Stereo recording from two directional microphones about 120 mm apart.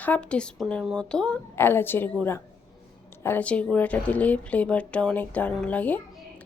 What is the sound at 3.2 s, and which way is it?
Speech, 15° left (ahead or behind).